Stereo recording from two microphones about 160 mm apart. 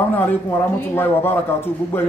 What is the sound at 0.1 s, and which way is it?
A man's voice, 10° left (ahead or behind).